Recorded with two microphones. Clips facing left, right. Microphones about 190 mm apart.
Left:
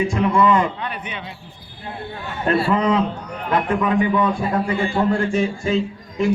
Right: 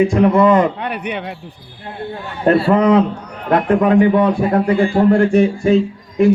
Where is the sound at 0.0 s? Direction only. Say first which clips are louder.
Right 6 dB; 55° right (ahead or behind).